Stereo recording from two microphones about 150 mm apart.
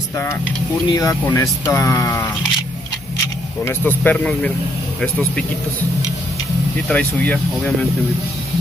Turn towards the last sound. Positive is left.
turn(degrees=10)  # may be behind; listen again after turning